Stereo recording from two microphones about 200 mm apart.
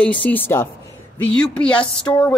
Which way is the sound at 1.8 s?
25° left (ahead or behind).